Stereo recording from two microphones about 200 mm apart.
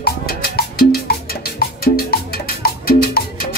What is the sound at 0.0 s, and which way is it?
Music, 50° left (ahead or behind).